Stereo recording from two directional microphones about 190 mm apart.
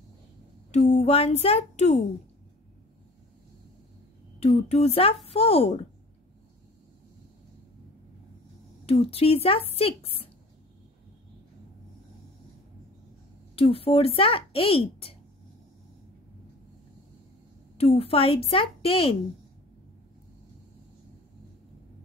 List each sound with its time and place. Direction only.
0.7 s speech: 35° left (ahead or behind)
4.4 s speech: 35° left (ahead or behind)
8.8 s speech: 30° left (ahead or behind)
13.6 s speech: 30° left (ahead or behind)
17.7 s speech: 30° left (ahead or behind)